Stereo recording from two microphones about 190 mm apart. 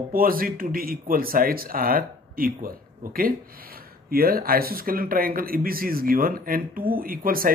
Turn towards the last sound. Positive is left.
turn(degrees=-50)  # may be behind; listen again after turning